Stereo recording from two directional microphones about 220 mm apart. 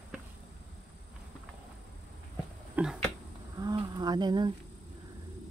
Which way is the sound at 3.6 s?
20° right (ahead or behind).